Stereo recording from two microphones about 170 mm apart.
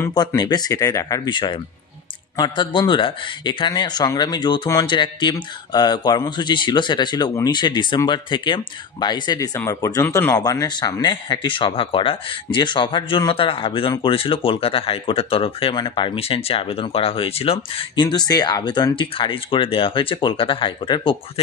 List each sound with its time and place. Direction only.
0.0 s speech: 20° left (ahead or behind)